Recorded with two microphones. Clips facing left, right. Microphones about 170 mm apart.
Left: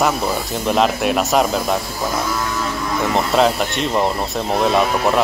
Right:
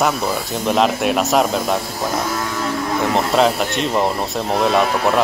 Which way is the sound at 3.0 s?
Centre (ahead or behind).